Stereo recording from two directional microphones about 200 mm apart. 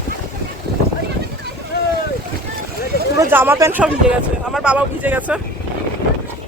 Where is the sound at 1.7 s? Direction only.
55° left (ahead or behind).